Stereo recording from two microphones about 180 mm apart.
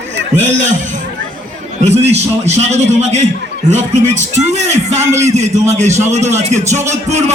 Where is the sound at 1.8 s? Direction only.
40° right (ahead or behind).